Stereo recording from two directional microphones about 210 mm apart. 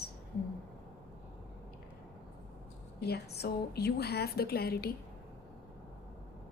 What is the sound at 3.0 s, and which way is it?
A woman's voice, 50° left (ahead or behind).